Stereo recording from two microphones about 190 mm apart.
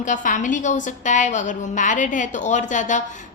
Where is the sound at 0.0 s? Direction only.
40° left (ahead or behind).